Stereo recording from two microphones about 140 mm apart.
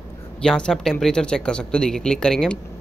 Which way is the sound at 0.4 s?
5° left (ahead or behind).